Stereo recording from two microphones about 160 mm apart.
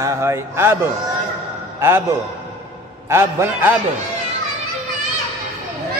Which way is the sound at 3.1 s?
15° right (ahead or behind).